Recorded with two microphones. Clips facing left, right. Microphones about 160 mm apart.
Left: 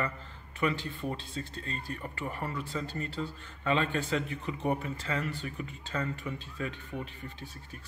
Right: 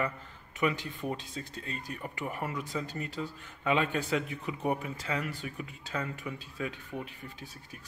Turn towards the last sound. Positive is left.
turn(degrees=-10)  # may be behind; listen again after turning